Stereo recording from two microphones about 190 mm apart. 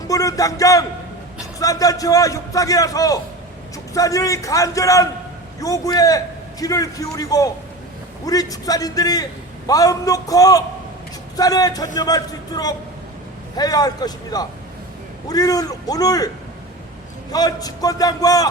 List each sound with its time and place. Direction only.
0.1 s a man's voice: 15° left (ahead or behind)
17.3 s a man's voice: 20° left (ahead or behind)